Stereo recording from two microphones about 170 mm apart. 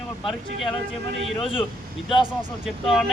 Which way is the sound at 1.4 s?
30° left (ahead or behind).